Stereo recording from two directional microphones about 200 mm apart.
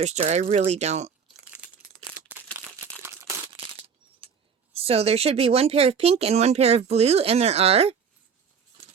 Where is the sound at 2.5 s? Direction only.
10° right (ahead or behind).